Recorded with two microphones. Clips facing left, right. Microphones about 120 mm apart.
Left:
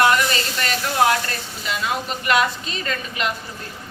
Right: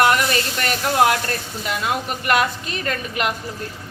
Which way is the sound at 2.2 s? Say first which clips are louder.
Even; 50° right (ahead or behind).